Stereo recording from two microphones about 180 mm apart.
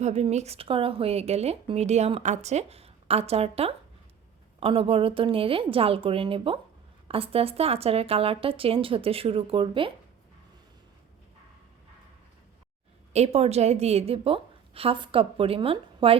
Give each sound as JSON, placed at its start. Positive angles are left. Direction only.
{"t": 0.0, "sound": "speech", "side_deg": -35}
{"t": 13.1, "sound": "speech", "side_deg": -35}